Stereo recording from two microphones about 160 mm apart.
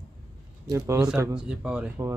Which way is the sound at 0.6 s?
20° right (ahead or behind).